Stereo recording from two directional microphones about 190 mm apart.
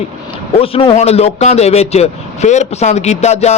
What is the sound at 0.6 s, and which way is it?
A man's voice, 30° left (ahead or behind).